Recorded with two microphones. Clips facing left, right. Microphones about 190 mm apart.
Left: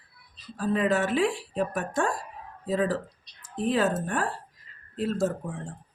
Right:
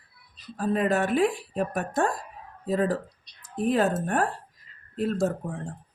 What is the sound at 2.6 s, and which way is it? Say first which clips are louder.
Speech: right 1 dB; 45° right (ahead or behind).